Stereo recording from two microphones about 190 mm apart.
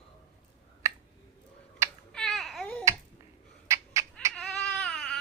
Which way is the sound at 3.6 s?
15° right (ahead or behind).